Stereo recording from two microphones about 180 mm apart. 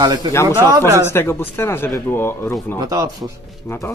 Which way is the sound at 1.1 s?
15° left (ahead or behind).